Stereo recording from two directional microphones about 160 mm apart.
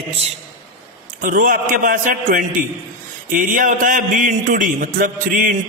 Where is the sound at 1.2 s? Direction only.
55° right (ahead or behind).